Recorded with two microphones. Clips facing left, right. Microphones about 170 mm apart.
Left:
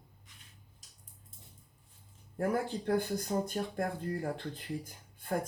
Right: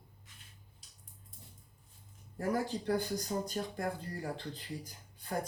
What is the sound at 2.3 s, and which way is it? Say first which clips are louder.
A man's voice: left 2 dB; 55° left (ahead or behind).